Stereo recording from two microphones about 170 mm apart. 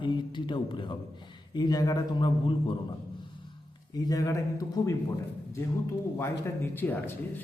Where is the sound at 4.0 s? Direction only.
20° left (ahead or behind).